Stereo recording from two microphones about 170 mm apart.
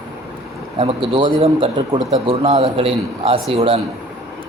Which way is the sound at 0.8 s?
35° right (ahead or behind).